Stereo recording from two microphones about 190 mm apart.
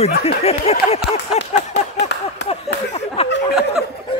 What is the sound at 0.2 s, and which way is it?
Speech, 30° left (ahead or behind).